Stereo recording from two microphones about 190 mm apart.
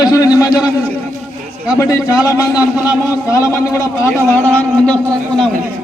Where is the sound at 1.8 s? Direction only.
15° left (ahead or behind).